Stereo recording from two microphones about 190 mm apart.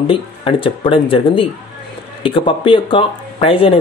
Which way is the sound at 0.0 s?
30° left (ahead or behind).